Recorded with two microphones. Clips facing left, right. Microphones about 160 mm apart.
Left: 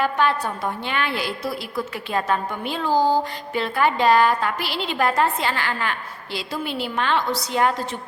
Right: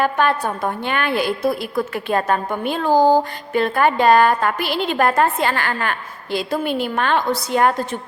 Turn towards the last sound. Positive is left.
turn(degrees=-50)  # may be behind; listen again after turning